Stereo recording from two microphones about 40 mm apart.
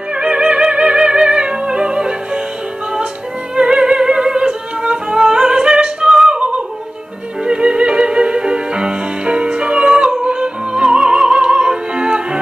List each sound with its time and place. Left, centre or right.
0.1 s music: right
3.5 s music: right